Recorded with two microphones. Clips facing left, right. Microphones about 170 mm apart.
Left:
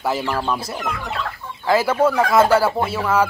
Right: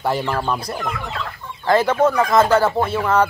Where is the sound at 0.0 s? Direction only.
Centre (ahead or behind).